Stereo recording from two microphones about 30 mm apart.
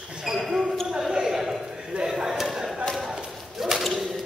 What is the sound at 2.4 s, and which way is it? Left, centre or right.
Chop, centre.